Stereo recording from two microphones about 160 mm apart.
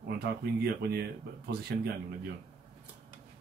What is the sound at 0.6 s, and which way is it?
Speech, 85° right.